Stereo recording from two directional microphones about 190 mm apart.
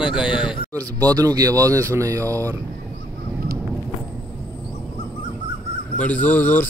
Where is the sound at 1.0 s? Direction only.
20° right (ahead or behind).